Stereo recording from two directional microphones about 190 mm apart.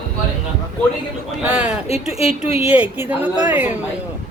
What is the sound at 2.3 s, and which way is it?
Speech, 30° left (ahead or behind).